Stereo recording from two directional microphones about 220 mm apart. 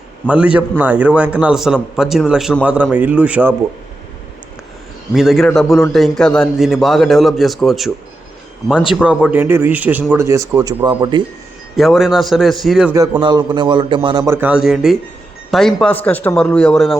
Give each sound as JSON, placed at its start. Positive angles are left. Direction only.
{"t": 0.3, "sound": "a man's voice", "side_deg": -5}
{"t": 5.1, "sound": "a man's voice", "side_deg": 0}
{"t": 9.0, "sound": "a man's voice", "side_deg": -5}
{"t": 11.8, "sound": "a man's voice", "side_deg": 0}
{"t": 13.0, "sound": "a man's voice", "side_deg": -20}